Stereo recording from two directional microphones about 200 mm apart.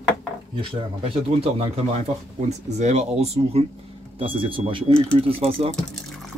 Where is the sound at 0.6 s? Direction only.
30° right (ahead or behind).